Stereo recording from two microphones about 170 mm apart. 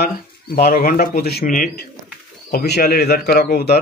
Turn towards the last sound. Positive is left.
turn(degrees=70)  # may be behind; listen again after turning